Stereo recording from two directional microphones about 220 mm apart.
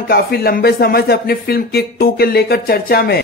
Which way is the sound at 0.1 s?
45° left (ahead or behind).